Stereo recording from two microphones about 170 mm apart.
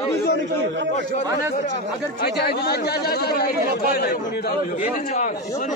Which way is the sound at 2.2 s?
70° left (ahead or behind).